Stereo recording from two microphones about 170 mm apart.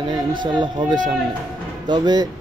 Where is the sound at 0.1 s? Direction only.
25° right (ahead or behind).